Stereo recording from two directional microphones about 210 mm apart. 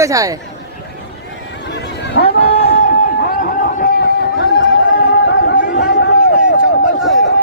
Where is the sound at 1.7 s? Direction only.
55° left (ahead or behind).